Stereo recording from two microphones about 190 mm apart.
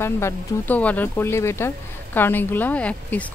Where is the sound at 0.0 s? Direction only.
10° left (ahead or behind).